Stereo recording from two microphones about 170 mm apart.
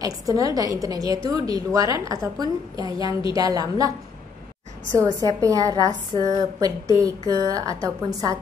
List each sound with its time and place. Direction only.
0.0 s a woman's voice: 20° right (ahead or behind)
5.2 s a woman's voice: 20° right (ahead or behind)